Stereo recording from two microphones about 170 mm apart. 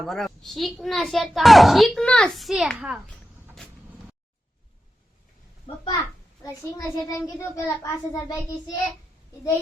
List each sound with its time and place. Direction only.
0.0 s a child's voice: centre (ahead or behind)
6.4 s a child's voice: 20° left (ahead or behind)